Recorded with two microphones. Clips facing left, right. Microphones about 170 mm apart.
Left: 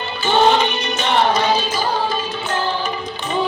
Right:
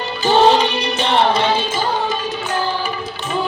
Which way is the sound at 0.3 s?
35° right (ahead or behind).